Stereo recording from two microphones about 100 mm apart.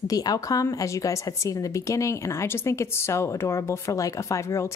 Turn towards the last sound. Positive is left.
turn(degrees=30)  # may be behind; listen again after turning